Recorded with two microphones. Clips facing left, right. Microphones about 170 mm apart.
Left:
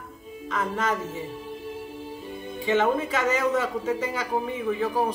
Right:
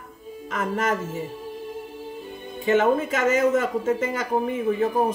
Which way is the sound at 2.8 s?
50° right (ahead or behind).